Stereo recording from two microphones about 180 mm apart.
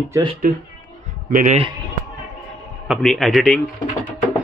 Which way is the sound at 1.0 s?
45° right (ahead or behind).